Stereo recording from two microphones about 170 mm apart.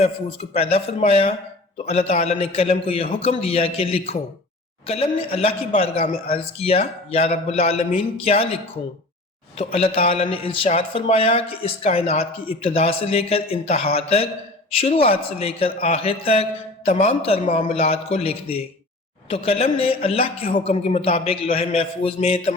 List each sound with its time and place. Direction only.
0.5 s speech: 35° left (ahead or behind)
9.7 s speech: 35° left (ahead or behind)